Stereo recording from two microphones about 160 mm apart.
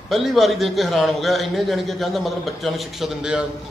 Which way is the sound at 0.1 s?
Centre (ahead or behind).